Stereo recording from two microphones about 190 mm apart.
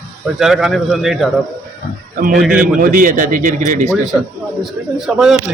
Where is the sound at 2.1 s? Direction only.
45° right (ahead or behind).